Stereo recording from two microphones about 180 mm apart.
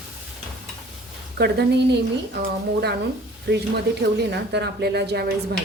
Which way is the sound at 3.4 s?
65° right (ahead or behind).